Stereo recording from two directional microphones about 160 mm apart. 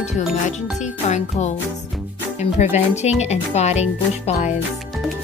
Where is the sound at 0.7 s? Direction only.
45° left (ahead or behind).